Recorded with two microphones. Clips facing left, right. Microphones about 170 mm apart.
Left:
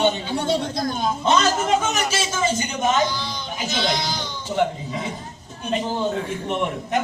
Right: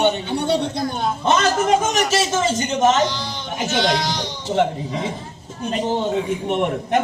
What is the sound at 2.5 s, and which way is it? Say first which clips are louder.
Speech: right 6 dB; 70° right (ahead or behind).